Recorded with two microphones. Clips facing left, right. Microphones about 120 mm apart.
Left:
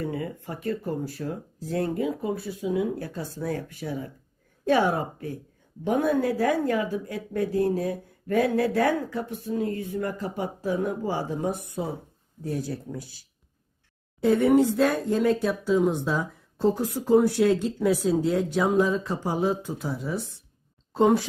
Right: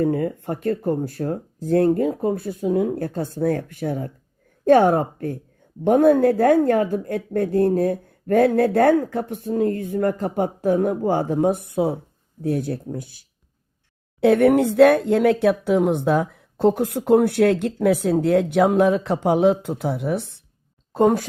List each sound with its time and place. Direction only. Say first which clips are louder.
0.0 s a woman's voice: right 10 dB; 50° right (ahead or behind); by 20.2 s 65° right (ahead or behind)
20.9 s a woman's voice: right 3 dB; 50° right (ahead or behind)